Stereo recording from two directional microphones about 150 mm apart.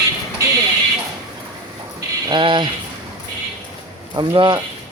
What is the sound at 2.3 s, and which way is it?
Speech, 30° right (ahead or behind).